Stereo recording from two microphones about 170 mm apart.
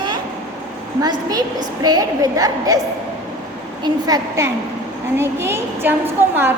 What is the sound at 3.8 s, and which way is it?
A woman's voice, 20° right (ahead or behind).